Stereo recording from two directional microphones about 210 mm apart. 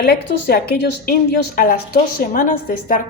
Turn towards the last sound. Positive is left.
turn(degrees=40)  # may be behind; listen again after turning